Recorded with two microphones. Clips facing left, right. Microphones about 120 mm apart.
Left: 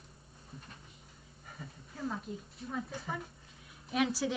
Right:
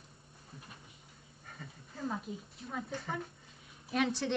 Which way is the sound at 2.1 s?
Centre (ahead or behind).